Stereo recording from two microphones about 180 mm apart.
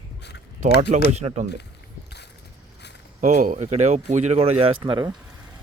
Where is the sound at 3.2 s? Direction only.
45° right (ahead or behind); by 5.1 s 25° right (ahead or behind).